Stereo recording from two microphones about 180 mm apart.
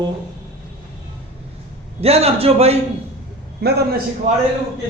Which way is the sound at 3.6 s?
60° right (ahead or behind).